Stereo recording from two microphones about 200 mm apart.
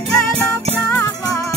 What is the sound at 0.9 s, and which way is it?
Music, 5° left (ahead or behind).